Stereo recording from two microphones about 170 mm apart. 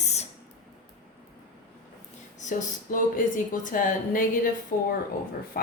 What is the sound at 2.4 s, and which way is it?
A woman's voice, 50° left (ahead or behind).